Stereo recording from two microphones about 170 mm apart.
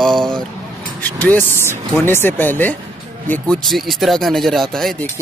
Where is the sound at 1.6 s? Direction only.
15° left (ahead or behind).